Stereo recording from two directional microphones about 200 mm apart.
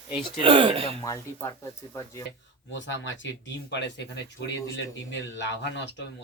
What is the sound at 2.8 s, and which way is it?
Speech, 65° left (ahead or behind).